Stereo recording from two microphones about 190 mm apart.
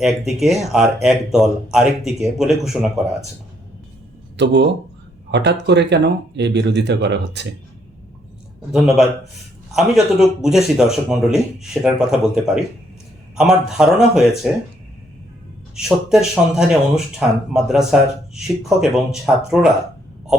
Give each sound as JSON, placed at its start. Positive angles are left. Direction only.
{"t": 0.0, "sound": "speech", "side_deg": 0}
{"t": 4.4, "sound": "speech", "side_deg": -65}
{"t": 9.7, "sound": "speech", "side_deg": 0}
{"t": 15.7, "sound": "speech", "side_deg": 0}